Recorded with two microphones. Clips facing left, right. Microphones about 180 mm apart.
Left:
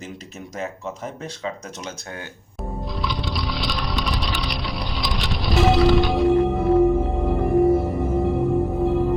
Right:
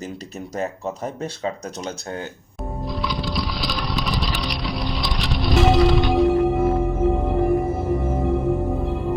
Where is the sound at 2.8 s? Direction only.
Centre (ahead or behind).